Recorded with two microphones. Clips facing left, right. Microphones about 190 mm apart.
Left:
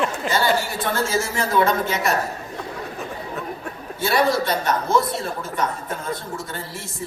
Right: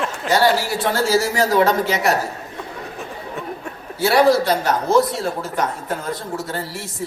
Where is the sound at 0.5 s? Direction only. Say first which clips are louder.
Right 3 dB; 80° right.